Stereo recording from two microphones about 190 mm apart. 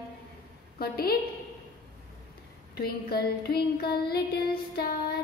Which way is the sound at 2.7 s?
55° left (ahead or behind).